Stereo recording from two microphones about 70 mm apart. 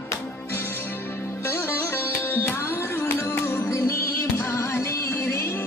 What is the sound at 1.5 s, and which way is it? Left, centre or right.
Sitar, left.